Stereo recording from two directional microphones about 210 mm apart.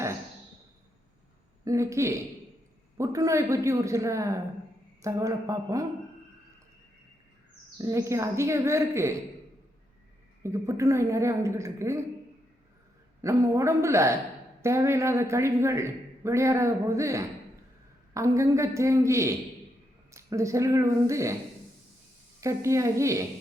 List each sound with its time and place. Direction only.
1.6 s speech: 15° right (ahead or behind)
7.8 s speech: 15° right (ahead or behind)
10.4 s speech: 15° right (ahead or behind)
13.2 s speech: 15° right (ahead or behind)
22.4 s speech: 15° right (ahead or behind)